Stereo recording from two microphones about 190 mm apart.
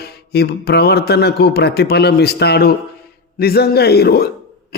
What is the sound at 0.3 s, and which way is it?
Speech, 60° left (ahead or behind).